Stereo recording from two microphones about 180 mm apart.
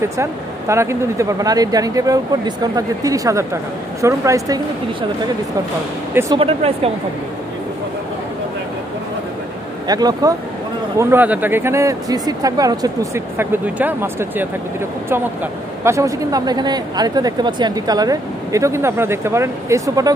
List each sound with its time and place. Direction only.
0.2 s speech: 15° right (ahead or behind)
6.3 s speech: 35° right (ahead or behind)
9.8 s speech: 20° right (ahead or behind)
15.8 s speech: 15° right (ahead or behind)